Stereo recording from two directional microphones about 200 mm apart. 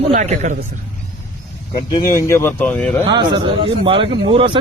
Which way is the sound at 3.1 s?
20° right (ahead or behind).